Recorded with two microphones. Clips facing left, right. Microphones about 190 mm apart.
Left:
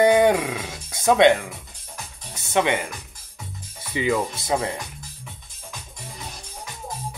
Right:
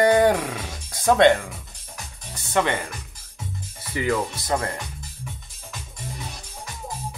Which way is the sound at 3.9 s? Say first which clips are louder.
Left 1 dB; 15° left (ahead or behind).